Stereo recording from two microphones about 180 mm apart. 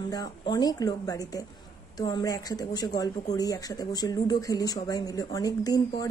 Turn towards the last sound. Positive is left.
turn(degrees=20)  # may be behind; listen again after turning